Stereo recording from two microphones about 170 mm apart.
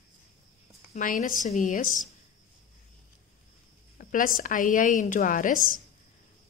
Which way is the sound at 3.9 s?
55° left (ahead or behind).